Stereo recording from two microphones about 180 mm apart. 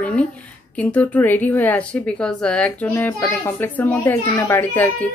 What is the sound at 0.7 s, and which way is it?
A woman's voice, 10° left (ahead or behind).